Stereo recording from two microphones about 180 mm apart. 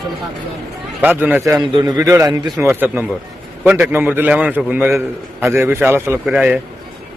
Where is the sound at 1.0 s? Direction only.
10° right (ahead or behind).